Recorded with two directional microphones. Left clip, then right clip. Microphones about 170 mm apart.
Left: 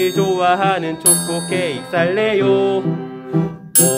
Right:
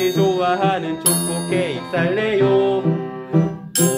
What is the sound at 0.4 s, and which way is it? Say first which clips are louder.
Music: left 3 dB; 55° left (ahead or behind).